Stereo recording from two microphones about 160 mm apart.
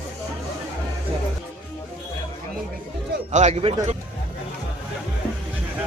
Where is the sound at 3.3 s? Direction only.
45° right (ahead or behind).